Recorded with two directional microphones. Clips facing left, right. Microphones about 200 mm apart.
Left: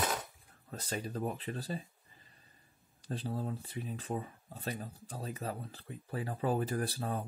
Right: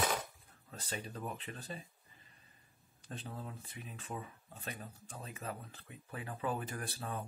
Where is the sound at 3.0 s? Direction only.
35° left (ahead or behind).